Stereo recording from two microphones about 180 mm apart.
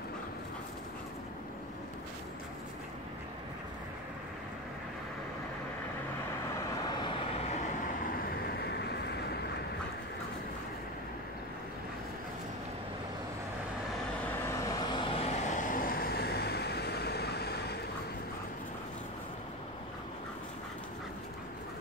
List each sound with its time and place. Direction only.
7.0 s vehicle: 30° left (ahead or behind)
8.1 s vehicle: 55° left (ahead or behind)
14.6 s vehicle: 25° left (ahead or behind)
15.7 s vehicle: 55° left (ahead or behind)